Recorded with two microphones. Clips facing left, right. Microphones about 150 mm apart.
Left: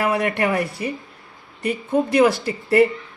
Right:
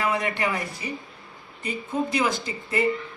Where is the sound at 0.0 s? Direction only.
60° left (ahead or behind).